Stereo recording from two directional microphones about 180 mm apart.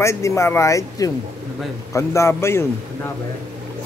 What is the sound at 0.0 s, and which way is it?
Speech, 15° left (ahead or behind).